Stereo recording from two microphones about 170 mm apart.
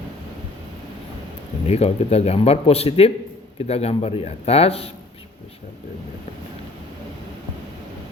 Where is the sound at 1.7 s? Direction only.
35° left (ahead or behind).